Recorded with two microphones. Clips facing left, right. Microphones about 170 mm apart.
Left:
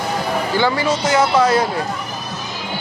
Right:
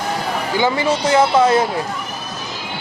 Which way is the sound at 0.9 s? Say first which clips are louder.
Right 1 dB; 30° right (ahead or behind).